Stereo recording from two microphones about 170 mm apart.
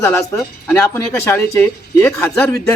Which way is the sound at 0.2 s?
5° left (ahead or behind).